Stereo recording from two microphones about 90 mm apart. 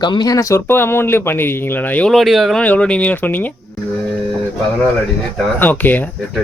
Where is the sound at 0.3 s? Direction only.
35° left (ahead or behind).